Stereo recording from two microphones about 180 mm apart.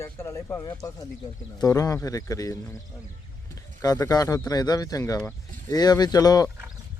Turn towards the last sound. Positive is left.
turn(degrees=20)  # may be behind; listen again after turning